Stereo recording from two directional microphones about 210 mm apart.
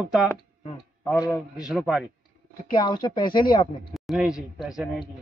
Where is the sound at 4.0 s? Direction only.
Centre (ahead or behind).